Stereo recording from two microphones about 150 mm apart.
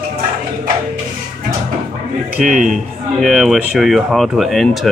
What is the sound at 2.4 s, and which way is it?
Speech, 60° right (ahead or behind).